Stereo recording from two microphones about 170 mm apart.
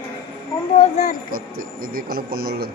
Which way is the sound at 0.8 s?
40° left (ahead or behind).